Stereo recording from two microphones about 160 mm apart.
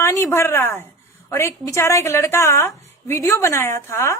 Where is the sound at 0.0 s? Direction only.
15° left (ahead or behind).